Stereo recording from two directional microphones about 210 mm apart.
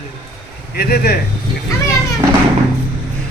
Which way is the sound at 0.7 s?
50° left (ahead or behind).